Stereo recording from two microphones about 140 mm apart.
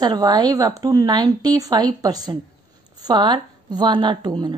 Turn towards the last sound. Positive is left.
turn(degrees=-30)  # may be behind; listen again after turning